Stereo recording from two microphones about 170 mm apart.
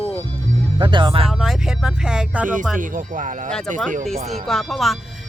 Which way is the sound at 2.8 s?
50° right (ahead or behind).